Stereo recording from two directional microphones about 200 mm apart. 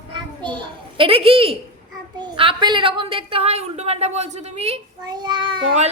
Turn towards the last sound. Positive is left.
turn(degrees=-25)  # may be behind; listen again after turning